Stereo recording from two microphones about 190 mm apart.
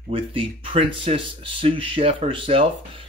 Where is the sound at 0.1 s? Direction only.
30° right (ahead or behind).